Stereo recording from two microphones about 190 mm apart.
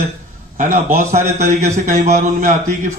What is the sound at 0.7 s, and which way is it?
A man's voice, 40° right (ahead or behind).